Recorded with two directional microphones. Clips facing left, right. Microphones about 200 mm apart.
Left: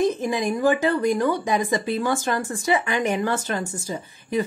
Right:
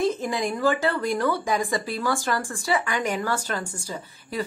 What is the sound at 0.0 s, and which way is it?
Speech, 15° left (ahead or behind).